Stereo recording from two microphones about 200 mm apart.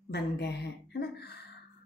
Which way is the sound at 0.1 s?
55° left (ahead or behind).